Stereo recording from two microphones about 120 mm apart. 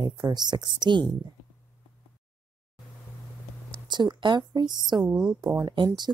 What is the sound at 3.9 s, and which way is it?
A woman's voice, 40° right (ahead or behind).